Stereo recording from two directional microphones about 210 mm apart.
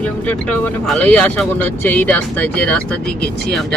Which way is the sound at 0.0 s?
5° left (ahead or behind).